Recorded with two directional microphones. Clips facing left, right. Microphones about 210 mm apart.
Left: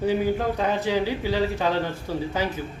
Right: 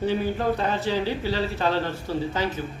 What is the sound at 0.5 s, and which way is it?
Speech, 15° left (ahead or behind).